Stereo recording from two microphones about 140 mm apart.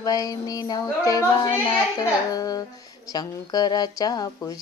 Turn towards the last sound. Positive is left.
turn(degrees=25)  # may be behind; listen again after turning